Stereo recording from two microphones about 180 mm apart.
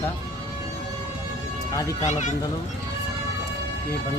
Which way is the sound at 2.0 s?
40° left (ahead or behind).